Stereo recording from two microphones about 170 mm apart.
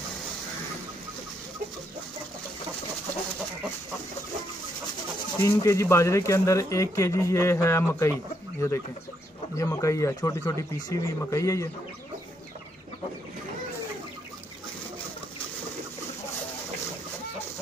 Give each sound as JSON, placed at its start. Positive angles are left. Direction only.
{"t": 5.4, "sound": "speech", "side_deg": 20}